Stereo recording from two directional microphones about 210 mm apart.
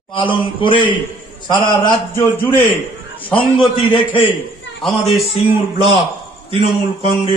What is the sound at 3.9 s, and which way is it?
Speech, 25° left (ahead or behind).